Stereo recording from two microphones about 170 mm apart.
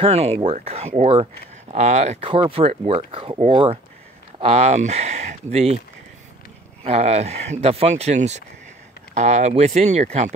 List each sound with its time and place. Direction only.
0.0 s speech: 40° right (ahead or behind)
6.8 s speech: 40° right (ahead or behind)